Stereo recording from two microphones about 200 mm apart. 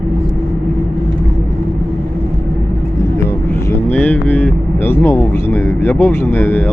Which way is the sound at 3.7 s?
5° left (ahead or behind).